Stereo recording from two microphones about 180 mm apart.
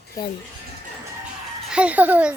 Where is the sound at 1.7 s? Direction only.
5° right (ahead or behind).